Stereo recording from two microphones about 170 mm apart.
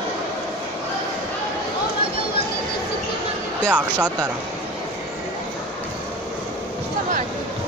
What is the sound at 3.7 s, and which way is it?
Speech, 10° right (ahead or behind).